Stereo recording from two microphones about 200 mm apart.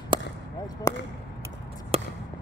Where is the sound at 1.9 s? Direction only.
30° right (ahead or behind).